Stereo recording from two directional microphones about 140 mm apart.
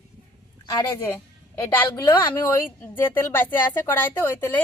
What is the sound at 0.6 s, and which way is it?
Speech, 35° left (ahead or behind).